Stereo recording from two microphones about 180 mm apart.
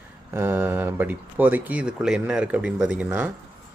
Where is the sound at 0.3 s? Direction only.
15° right (ahead or behind).